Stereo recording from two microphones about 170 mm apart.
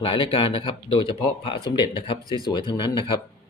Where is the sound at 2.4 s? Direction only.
25° left (ahead or behind).